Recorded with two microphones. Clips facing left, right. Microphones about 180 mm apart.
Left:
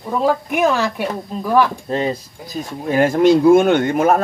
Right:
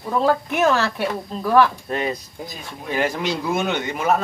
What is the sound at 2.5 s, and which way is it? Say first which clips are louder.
Speech: left 9 dB; 45° left (ahead or behind).